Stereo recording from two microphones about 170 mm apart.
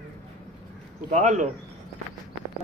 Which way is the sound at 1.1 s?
45° right (ahead or behind).